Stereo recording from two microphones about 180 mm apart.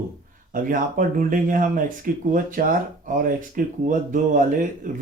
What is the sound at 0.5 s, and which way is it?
Speech, 50° right (ahead or behind).